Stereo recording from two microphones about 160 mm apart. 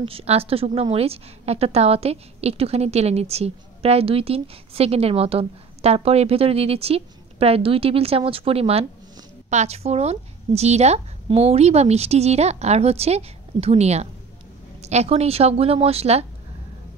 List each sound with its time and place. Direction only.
0.0 s a woman's voice: 40° right (ahead or behind)